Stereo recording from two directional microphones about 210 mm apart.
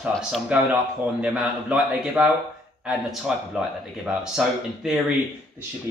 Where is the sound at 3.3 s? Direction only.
5° right (ahead or behind).